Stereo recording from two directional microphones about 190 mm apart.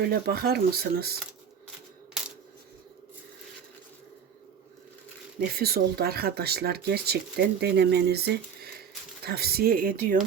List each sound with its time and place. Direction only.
0.0 s speech: 55° right (ahead or behind)
5.5 s speech: 55° right (ahead or behind)